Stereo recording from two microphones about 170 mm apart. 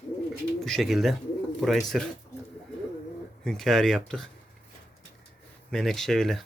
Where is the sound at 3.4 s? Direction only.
Centre (ahead or behind).